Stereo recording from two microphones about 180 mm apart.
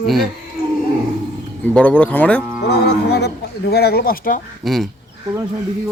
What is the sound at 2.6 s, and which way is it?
Speech, 65° left (ahead or behind).